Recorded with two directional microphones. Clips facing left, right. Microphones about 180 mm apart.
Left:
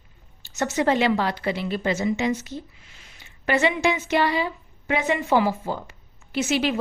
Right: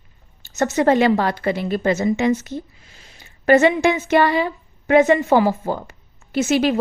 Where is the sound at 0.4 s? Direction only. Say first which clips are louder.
Right 5 dB; 45° right (ahead or behind).